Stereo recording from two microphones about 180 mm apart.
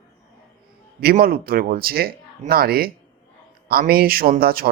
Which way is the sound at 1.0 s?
55° right (ahead or behind).